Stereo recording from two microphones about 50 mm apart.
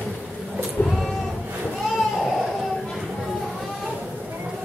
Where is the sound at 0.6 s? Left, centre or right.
Centre.